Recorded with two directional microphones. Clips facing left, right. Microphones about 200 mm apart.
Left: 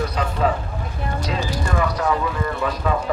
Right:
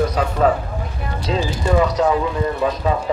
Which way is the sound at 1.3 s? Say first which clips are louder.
Right 7 dB; 20° right (ahead or behind).